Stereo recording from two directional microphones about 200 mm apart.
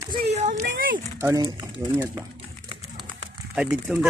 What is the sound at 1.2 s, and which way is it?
Speech, 15° right (ahead or behind).